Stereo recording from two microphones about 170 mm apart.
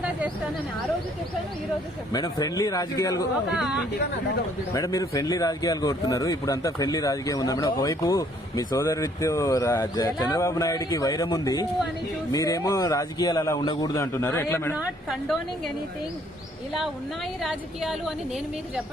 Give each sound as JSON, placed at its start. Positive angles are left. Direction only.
{"t": 2.1, "sound": "speech", "side_deg": 20}
{"t": 3.5, "sound": "a woman's voice", "side_deg": -5}
{"t": 4.7, "sound": "a man's voice", "side_deg": 20}
{"t": 14.8, "sound": "a woman's voice", "side_deg": 0}
{"t": 17.4, "sound": "a woman's voice", "side_deg": 0}